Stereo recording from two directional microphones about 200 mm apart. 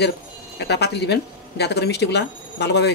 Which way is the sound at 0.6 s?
55° left (ahead or behind).